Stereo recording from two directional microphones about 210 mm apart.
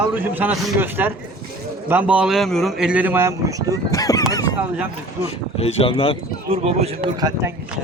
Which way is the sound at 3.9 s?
15° left (ahead or behind).